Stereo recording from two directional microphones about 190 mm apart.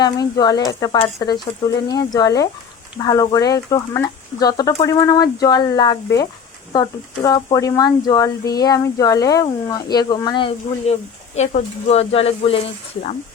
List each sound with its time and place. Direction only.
0.0 s speech: 20° left (ahead or behind)